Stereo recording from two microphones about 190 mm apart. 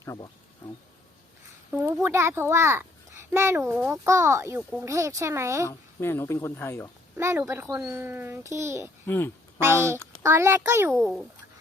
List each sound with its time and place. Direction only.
0.0 s speech: 15° left (ahead or behind)
1.7 s a child's voice: 15° right (ahead or behind)
5.6 s speech: 10° left (ahead or behind)
7.2 s a child's voice: 15° right (ahead or behind)
9.0 s speech: 10° left (ahead or behind)
9.6 s a child's voice: 15° right (ahead or behind)